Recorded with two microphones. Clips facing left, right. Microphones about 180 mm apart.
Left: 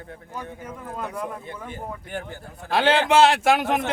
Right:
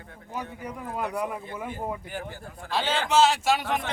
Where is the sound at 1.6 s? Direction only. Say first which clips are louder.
Right 2 dB; 15° right (ahead or behind).